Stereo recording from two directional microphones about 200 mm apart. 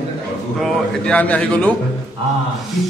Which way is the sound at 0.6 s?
5° left (ahead or behind).